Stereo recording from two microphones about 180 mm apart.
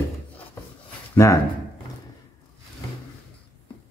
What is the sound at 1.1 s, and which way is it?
Speech, 15° left (ahead or behind).